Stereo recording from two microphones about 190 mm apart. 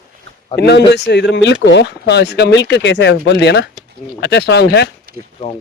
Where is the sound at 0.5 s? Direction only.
60° left (ahead or behind).